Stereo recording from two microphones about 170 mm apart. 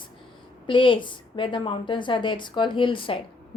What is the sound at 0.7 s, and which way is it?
A woman's voice, 30° left (ahead or behind).